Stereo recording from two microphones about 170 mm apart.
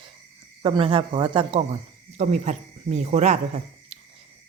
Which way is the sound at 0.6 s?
30° right (ahead or behind).